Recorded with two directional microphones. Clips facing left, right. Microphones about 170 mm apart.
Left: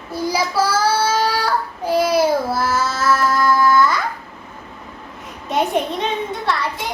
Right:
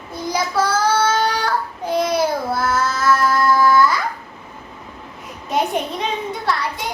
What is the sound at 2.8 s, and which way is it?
Child singing, 25° left (ahead or behind).